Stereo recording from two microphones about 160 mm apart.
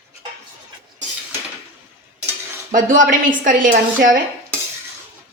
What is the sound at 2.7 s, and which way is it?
Speech, 55° right (ahead or behind).